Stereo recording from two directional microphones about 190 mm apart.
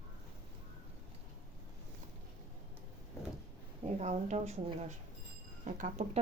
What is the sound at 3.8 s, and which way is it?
Speech, 35° right (ahead or behind).